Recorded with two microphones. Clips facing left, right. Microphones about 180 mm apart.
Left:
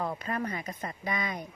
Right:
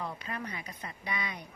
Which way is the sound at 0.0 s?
45° left (ahead or behind).